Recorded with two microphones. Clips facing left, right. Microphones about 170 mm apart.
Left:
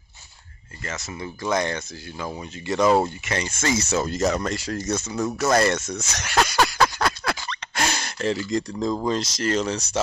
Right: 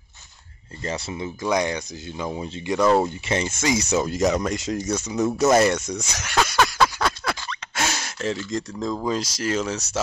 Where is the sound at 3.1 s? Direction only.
25° right (ahead or behind).